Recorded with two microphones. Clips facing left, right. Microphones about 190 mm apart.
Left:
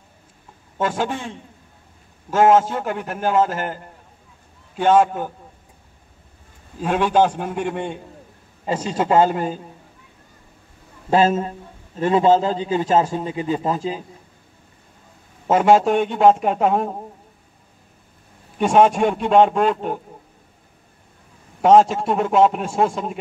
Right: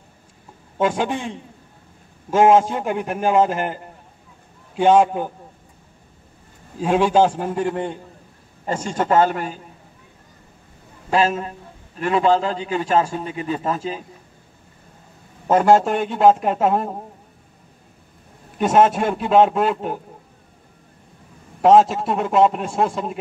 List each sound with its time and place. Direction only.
0.7 s a man's voice: 15° right (ahead or behind)
2.3 s a man's voice: 10° right (ahead or behind)
6.8 s a man's voice: 10° right (ahead or behind)
8.9 s speech: 15° left (ahead or behind)
11.1 s a man's voice: 25° left (ahead or behind)
15.4 s a man's voice: centre (ahead or behind)
18.6 s a man's voice: centre (ahead or behind)
21.5 s a man's voice: centre (ahead or behind)